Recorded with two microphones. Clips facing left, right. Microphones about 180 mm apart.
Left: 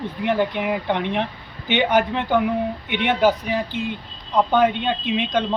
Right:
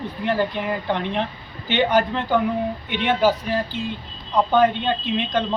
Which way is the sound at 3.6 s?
60° left (ahead or behind).